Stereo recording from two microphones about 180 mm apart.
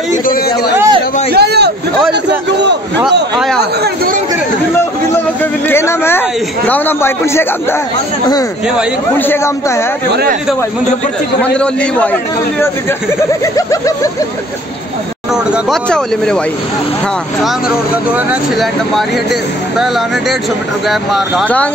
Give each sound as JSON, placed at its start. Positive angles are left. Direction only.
{"t": 0.1, "sound": "a man's voice", "side_deg": 50}
{"t": 0.7, "sound": "a sound", "side_deg": -25}
{"t": 1.3, "sound": "a sound", "side_deg": -65}
{"t": 3.8, "sound": "chatter", "side_deg": -55}
{"t": 5.1, "sound": "a man's voice", "side_deg": 15}
{"t": 9.2, "sound": "a man's voice", "side_deg": 15}
{"t": 11.4, "sound": "a man's voice", "side_deg": 5}
{"t": 13.6, "sound": "a man's voice", "side_deg": 20}
{"t": 15.3, "sound": "speech", "side_deg": 0}
{"t": 17.4, "sound": "speech", "side_deg": -5}
{"t": 20.9, "sound": "speech", "side_deg": 0}